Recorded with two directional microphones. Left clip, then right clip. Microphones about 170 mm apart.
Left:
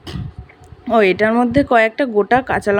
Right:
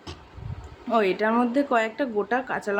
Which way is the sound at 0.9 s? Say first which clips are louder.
Left 9 dB; 40° left (ahead or behind).